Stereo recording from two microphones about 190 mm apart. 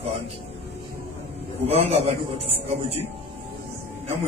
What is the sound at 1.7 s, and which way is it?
A man's voice, 30° right (ahead or behind).